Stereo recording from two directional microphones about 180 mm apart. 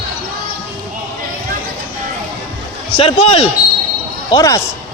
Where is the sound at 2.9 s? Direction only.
30° left (ahead or behind).